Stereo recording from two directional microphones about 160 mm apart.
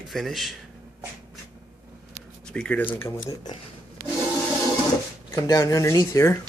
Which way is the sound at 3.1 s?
25° left (ahead or behind).